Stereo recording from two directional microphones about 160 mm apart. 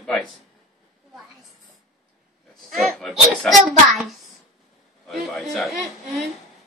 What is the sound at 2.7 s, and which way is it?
Hands, centre (ahead or behind).